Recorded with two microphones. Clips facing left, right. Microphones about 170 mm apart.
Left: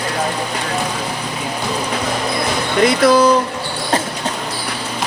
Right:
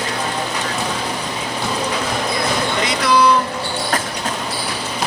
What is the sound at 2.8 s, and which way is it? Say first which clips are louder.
Speech: left 5 dB; 45° left (ahead or behind).